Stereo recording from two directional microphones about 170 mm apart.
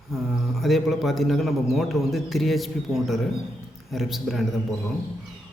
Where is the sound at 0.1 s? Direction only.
Centre (ahead or behind).